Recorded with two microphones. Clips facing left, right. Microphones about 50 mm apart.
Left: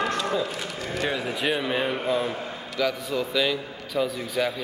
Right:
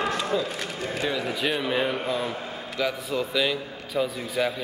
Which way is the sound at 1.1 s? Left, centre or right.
Centre.